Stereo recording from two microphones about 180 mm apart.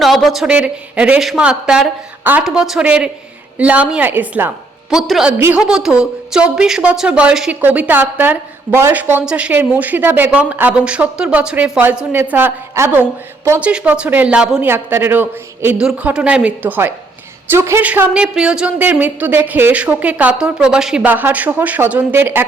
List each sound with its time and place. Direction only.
0.0 s a woman's voice: centre (ahead or behind)